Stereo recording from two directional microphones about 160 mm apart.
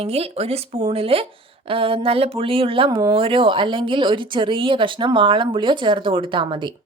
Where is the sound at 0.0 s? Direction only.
40° right (ahead or behind).